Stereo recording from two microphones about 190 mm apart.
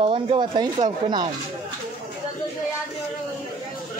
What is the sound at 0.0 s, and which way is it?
Speech, 30° right (ahead or behind).